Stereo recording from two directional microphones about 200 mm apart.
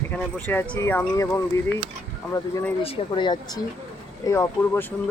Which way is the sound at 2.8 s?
25° left (ahead or behind).